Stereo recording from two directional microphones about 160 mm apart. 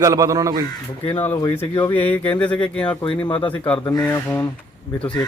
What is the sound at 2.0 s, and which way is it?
Speech, 10° left (ahead or behind).